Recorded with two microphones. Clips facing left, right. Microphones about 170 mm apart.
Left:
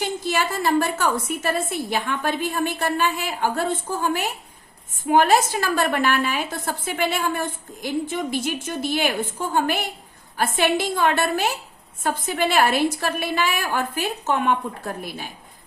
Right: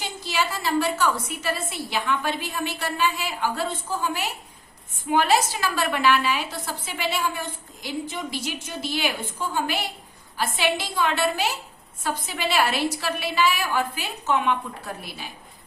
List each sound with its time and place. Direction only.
0.0 s a woman's voice: 50° left (ahead or behind)